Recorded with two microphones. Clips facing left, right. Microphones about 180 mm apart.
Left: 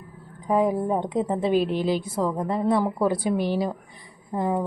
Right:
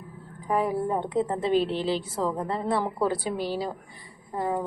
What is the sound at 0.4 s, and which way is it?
A woman's voice, 20° left (ahead or behind).